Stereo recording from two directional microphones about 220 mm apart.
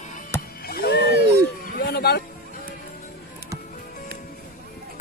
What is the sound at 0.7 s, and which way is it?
Music, 45° left (ahead or behind).